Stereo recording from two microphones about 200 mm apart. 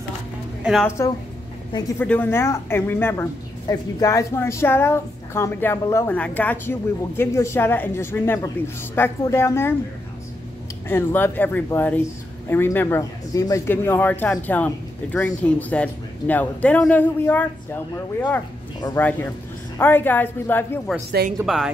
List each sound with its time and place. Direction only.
0.8 s speech: 15° left (ahead or behind)
2.0 s speech: 10° left (ahead or behind)
10.9 s speech: 10° left (ahead or behind)
21.2 s speech: 55° right (ahead or behind)